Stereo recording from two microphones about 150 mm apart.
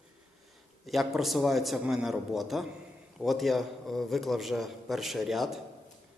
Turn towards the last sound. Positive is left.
turn(degrees=0)  # may be behind; listen again after turning